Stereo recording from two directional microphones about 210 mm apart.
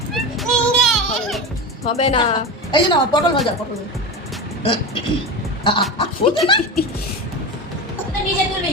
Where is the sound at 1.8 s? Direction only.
30° left (ahead or behind).